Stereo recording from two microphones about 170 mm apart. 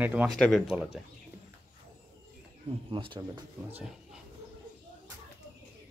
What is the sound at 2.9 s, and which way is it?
Speech, 30° right (ahead or behind).